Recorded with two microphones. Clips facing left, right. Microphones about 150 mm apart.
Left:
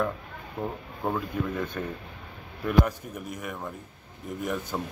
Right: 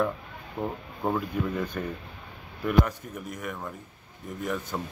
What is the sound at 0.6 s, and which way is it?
Speech, centre (ahead or behind).